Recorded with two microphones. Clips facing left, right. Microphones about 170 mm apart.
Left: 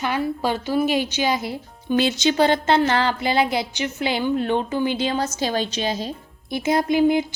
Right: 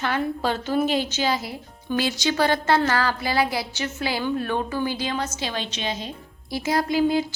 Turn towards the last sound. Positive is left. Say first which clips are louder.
# left 3 dB
turn(degrees=20)  # may be behind; listen again after turning